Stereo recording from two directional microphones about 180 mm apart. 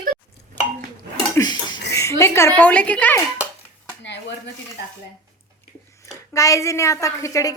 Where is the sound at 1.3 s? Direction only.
20° left (ahead or behind).